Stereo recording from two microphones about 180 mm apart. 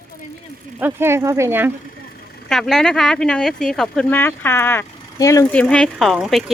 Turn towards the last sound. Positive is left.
turn(degrees=0)  # may be behind; listen again after turning